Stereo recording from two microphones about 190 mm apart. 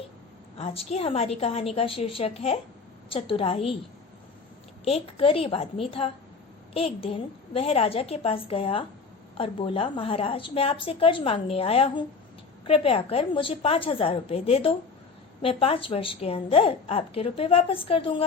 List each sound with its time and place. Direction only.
0.6 s a woman's voice: 30° left (ahead or behind)
4.9 s a woman's voice: 30° left (ahead or behind)